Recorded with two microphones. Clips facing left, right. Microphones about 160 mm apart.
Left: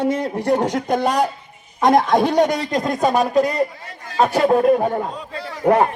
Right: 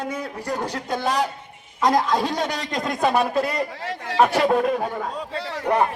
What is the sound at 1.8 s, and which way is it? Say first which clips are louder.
Music: left 5 dB; 60° left (ahead or behind).